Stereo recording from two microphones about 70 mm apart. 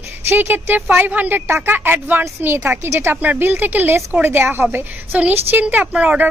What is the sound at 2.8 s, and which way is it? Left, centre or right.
Speech, right.